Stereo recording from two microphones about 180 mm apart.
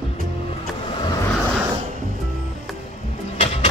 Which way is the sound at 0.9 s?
25° left (ahead or behind).